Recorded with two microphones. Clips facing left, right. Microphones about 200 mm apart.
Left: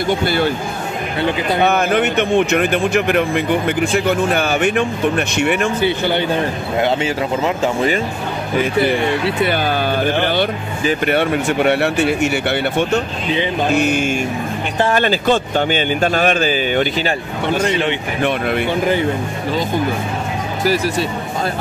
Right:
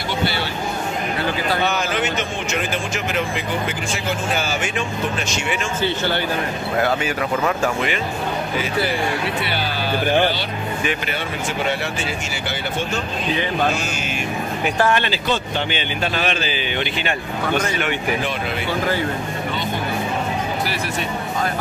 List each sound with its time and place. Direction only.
0.1 s a man's voice: 50° left (ahead or behind)
1.6 s speech: 55° left (ahead or behind)
5.8 s speech: 15° left (ahead or behind)
9.4 s a man's voice: 50° left (ahead or behind)
14.9 s a man's voice: 45° left (ahead or behind)
17.6 s speech: 25° left (ahead or behind)